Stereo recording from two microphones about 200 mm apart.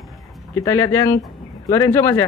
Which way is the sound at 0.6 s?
15° left (ahead or behind).